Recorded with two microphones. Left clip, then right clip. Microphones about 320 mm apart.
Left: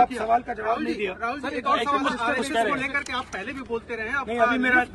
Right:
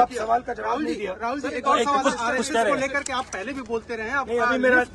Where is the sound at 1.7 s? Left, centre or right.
Right.